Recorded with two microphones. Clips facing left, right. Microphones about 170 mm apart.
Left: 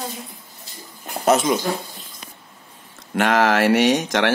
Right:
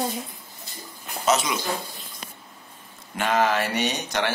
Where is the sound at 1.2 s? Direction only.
50° left (ahead or behind).